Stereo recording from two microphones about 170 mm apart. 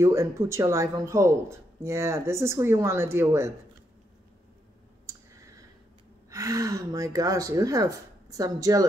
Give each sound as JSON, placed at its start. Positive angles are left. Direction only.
{"t": 0.0, "sound": "speech", "side_deg": -15}
{"t": 6.3, "sound": "speech", "side_deg": -20}